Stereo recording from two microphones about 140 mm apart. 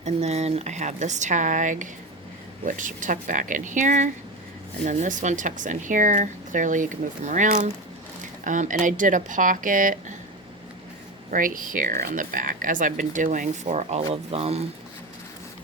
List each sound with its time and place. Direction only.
0.0 s speech: 50° right (ahead or behind); by 10.0 s 65° right (ahead or behind)
11.3 s speech: 75° right (ahead or behind); by 14.6 s 50° right (ahead or behind)